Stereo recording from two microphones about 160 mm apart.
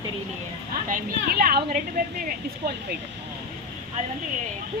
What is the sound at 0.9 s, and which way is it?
A woman's voice, 65° right (ahead or behind).